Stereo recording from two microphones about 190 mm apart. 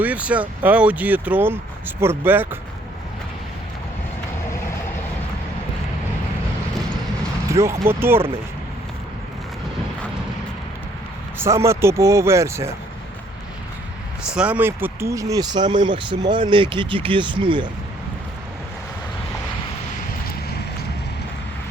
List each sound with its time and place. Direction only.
0.0 s speech: 5° right (ahead or behind)
7.5 s speech: 15° right (ahead or behind)
11.3 s speech: 15° right (ahead or behind)
14.3 s speech: 5° right (ahead or behind); by 17.7 s 25° right (ahead or behind)